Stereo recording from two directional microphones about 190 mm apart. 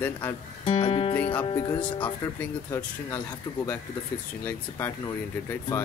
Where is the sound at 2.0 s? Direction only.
10° left (ahead or behind).